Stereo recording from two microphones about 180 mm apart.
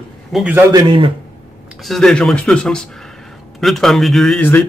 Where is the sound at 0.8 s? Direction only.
30° right (ahead or behind).